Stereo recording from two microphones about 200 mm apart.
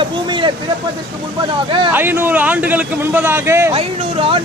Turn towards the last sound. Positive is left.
turn(degrees=-30)  # may be behind; listen again after turning